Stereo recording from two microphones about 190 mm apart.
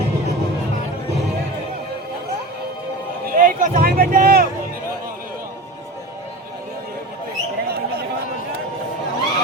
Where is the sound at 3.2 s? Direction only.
45° right (ahead or behind).